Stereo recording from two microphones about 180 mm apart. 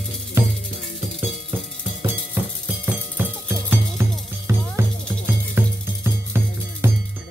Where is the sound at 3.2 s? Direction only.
10° right (ahead or behind).